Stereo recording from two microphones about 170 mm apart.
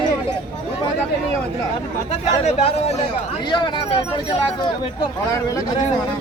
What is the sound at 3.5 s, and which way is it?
Speech, 30° left (ahead or behind).